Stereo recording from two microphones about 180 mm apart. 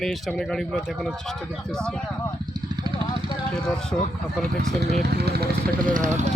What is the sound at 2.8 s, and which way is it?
Vehicle, 25° right (ahead or behind).